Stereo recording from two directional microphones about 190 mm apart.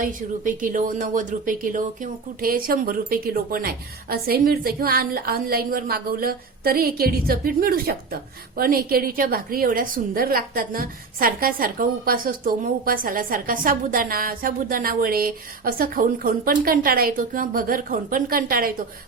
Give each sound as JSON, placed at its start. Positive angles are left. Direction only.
{"t": 0.0, "sound": "speech", "side_deg": -45}